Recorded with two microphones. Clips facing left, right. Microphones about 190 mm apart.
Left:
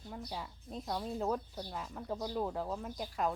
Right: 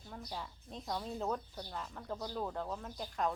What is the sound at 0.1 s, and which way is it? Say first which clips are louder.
Speech: left 2 dB; 5° left (ahead or behind).